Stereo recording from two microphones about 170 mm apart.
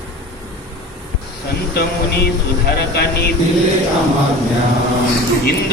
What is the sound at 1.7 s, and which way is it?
A man's voice, 70° left (ahead or behind).